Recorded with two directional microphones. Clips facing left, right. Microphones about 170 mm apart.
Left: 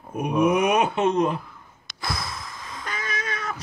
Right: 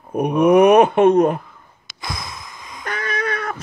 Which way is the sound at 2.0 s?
15° right (ahead or behind).